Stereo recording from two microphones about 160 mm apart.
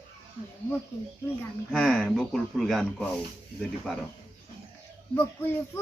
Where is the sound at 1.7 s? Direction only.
5° left (ahead or behind).